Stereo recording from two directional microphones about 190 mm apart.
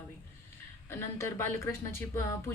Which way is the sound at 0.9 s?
15° left (ahead or behind).